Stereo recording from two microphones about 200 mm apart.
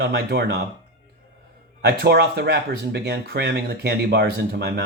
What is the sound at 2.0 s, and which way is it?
Speech, 55° right (ahead or behind).